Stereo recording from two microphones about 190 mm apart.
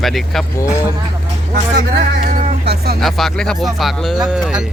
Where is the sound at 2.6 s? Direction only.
60° right (ahead or behind).